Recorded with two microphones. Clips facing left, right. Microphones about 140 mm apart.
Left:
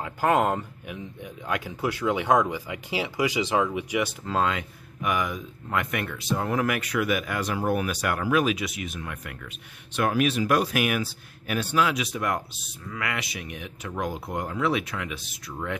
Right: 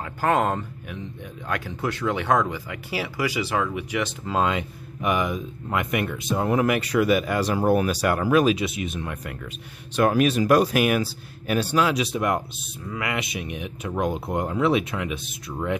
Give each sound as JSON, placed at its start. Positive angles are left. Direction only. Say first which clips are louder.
{"t": 0.0, "sound": "speech", "louder": "even", "side_deg": 10}
{"t": 4.3, "sound": "speech", "louder": "right 5 dB", "side_deg": -20}